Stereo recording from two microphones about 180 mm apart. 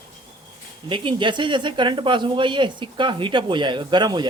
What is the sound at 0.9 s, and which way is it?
Speech, 30° right (ahead or behind).